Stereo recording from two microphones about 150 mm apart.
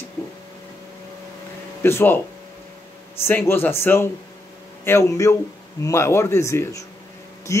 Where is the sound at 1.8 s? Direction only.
15° left (ahead or behind).